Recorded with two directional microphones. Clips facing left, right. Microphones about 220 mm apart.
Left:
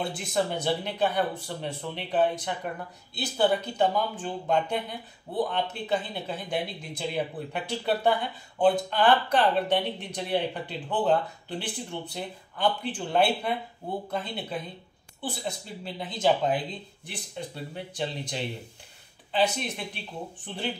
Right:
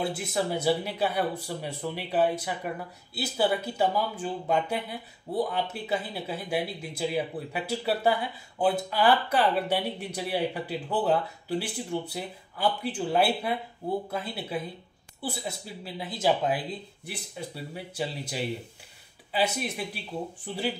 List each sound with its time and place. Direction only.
0.0 s speech: 5° right (ahead or behind)